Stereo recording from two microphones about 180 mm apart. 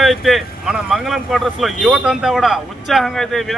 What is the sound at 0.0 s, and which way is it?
Speech, centre (ahead or behind).